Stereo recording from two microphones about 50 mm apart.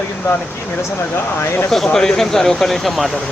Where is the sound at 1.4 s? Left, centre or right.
Left.